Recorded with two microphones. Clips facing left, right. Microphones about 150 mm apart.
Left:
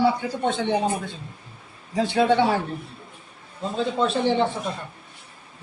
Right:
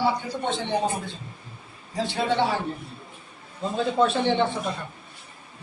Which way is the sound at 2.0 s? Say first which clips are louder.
Left 5 dB; 55° left (ahead or behind).